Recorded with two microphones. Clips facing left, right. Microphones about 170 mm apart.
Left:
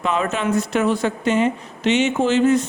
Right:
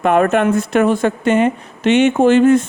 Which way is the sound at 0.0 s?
55° right (ahead or behind).